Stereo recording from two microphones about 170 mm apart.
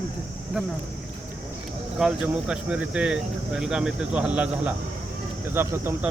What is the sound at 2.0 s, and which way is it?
Speech, 5° right (ahead or behind).